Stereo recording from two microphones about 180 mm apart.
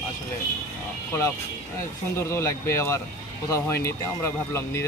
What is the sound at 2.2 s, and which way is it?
Speech, 15° left (ahead or behind).